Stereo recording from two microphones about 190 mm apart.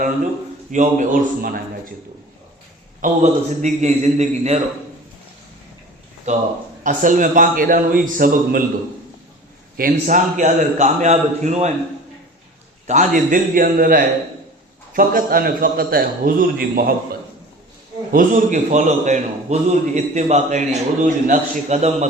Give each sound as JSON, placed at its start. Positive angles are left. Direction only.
{"t": 0.7, "sound": "a man's voice", "side_deg": -40}
{"t": 3.0, "sound": "a man's voice", "side_deg": -40}
{"t": 6.3, "sound": "a man's voice", "side_deg": -40}
{"t": 9.7, "sound": "a man's voice", "side_deg": -45}
{"t": 12.9, "sound": "a man's voice", "side_deg": -40}